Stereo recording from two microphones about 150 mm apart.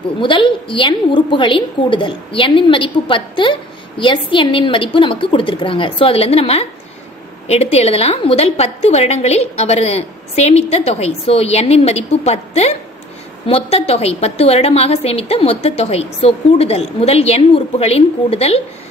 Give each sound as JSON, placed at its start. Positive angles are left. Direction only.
{"t": 0.2, "sound": "a woman's voice", "side_deg": 35}